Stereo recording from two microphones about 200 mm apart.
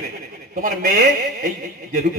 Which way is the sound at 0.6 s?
45° right (ahead or behind).